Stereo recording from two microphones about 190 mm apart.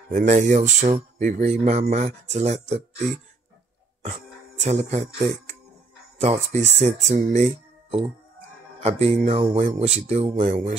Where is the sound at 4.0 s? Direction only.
35° right (ahead or behind).